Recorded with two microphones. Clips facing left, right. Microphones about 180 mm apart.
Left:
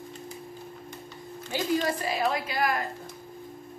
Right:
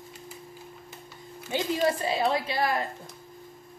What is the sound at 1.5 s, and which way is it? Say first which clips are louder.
A woman's voice: right 1 dB; 25° right (ahead or behind).